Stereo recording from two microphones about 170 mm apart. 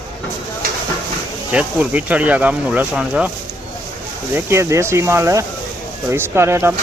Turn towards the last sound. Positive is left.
turn(degrees=-15)  # may be behind; listen again after turning